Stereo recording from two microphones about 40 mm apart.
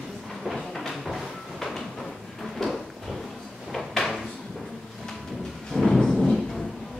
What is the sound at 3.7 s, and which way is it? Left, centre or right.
Drawer open or close, centre.